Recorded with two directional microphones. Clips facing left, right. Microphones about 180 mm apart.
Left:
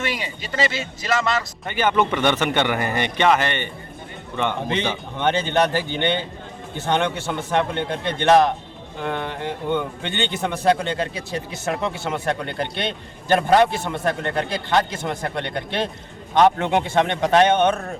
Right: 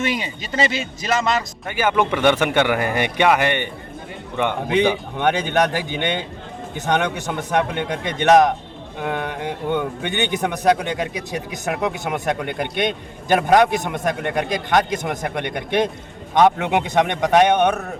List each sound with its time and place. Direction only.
0.0 s speech: 20° right (ahead or behind)
1.6 s a man's voice: 5° right (ahead or behind)
7.8 s a man's voice: 15° right (ahead or behind)
9.7 s a man's voice: 15° right (ahead or behind)